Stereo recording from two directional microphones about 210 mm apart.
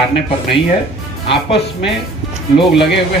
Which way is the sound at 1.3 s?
25° left (ahead or behind).